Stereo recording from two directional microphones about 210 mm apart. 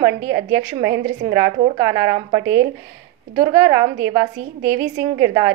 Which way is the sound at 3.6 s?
15° right (ahead or behind).